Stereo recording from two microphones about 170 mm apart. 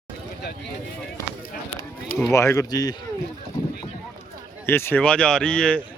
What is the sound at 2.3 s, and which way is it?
Speech, 15° left (ahead or behind).